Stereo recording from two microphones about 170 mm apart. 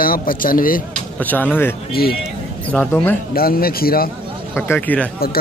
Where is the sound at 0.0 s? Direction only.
55° left (ahead or behind).